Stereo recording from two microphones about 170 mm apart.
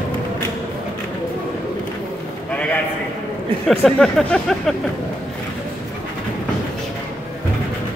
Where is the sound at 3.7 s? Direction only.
5° left (ahead or behind).